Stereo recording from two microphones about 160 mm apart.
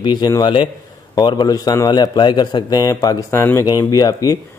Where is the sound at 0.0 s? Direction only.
25° left (ahead or behind).